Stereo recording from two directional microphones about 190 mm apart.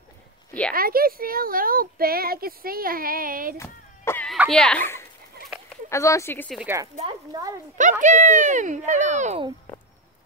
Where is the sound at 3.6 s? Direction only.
15° left (ahead or behind).